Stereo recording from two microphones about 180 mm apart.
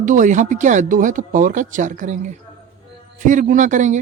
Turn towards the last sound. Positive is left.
turn(degrees=-45)  # may be behind; listen again after turning